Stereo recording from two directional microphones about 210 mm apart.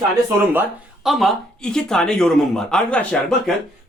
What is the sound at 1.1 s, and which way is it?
Speech, centre (ahead or behind).